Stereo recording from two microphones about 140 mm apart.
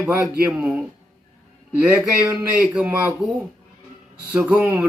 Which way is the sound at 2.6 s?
5° right (ahead or behind).